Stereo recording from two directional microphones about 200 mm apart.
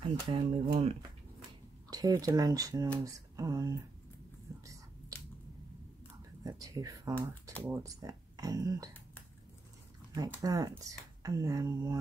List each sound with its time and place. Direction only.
0.0 s speech: 30° right (ahead or behind)
6.4 s speech: 15° right (ahead or behind)
10.1 s speech: 20° right (ahead or behind)